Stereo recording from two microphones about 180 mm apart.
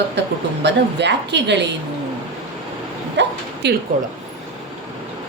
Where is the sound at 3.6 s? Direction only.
70° right (ahead or behind).